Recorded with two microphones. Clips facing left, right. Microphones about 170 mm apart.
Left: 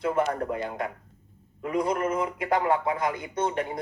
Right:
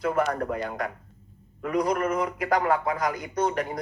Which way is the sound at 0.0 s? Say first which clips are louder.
Right 1 dB; 25° left (ahead or behind).